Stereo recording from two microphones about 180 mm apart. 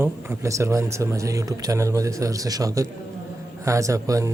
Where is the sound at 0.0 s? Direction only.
15° right (ahead or behind).